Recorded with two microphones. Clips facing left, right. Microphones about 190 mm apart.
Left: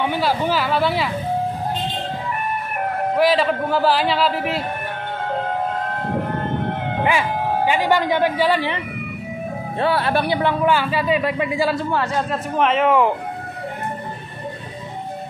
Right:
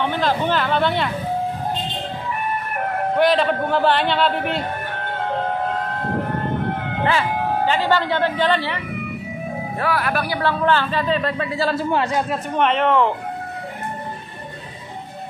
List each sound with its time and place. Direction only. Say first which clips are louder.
0.0 s speech: even; 10° left (ahead or behind)
3.2 s a man's voice: even; centre (ahead or behind)
7.1 s speech: right 1 dB; 10° left (ahead or behind)
9.8 s speech: left 3 dB; 25° left (ahead or behind)
10.6 s speech: left 1 dB; 10° left (ahead or behind)
11.9 s speech: right 1 dB; 20° right (ahead or behind)
12.3 s a man's voice: even; centre (ahead or behind)